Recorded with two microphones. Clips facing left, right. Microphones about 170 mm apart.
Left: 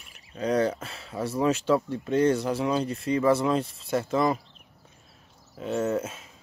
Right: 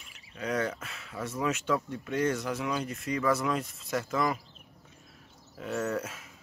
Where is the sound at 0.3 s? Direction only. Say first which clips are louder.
Left 7 dB; 30° left (ahead or behind).